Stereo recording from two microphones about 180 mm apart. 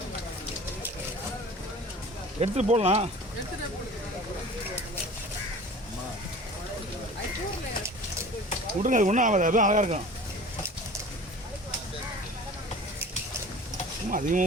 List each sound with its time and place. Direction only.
2.4 s speech: 35° right (ahead or behind)
8.8 s speech: 45° right (ahead or behind)
14.1 s speech: 45° right (ahead or behind)